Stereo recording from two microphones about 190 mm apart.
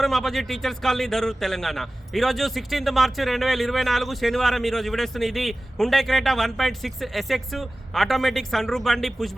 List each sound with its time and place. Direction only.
0.0 s speech: centre (ahead or behind)